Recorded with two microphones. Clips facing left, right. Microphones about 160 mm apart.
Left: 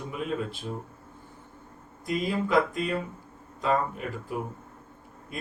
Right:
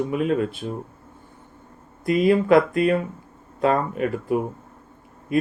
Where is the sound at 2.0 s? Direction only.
65° right (ahead or behind).